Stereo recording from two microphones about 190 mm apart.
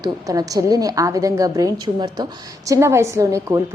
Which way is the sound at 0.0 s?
20° right (ahead or behind).